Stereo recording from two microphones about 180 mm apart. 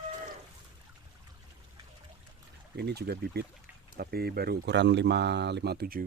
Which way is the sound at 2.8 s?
65° right (ahead or behind).